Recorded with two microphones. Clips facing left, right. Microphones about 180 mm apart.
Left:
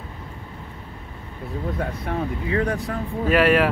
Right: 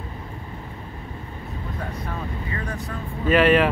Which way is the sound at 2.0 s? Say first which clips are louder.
Left 6 dB; 70° left (ahead or behind).